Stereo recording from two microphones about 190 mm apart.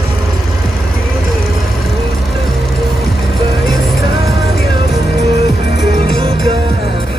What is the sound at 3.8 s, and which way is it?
Music, centre (ahead or behind).